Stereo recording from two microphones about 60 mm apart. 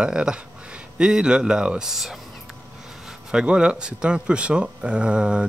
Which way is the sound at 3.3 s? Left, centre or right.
Centre.